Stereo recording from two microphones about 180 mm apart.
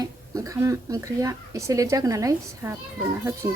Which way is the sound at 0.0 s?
20° right (ahead or behind).